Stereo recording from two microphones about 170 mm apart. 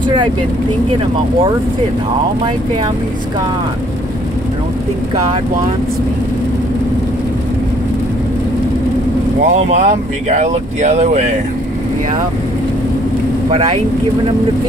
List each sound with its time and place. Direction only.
9.5 s speech: 40° right (ahead or behind)